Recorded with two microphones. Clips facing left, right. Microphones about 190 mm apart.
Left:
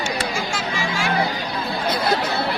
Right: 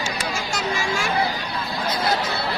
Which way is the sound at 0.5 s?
45° right (ahead or behind).